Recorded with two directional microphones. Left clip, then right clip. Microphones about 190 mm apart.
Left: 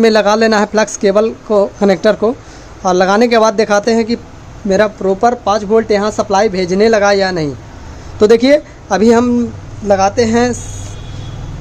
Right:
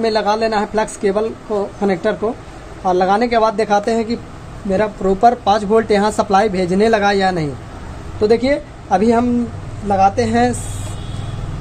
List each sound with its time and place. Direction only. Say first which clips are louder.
0.0 s a woman's voice: left 6 dB; 45° left (ahead or behind)
5.0 s speech: left 1 dB; 15° left (ahead or behind)
8.2 s a woman's voice: left 6 dB; 40° left (ahead or behind); by 10.6 s 25° left (ahead or behind)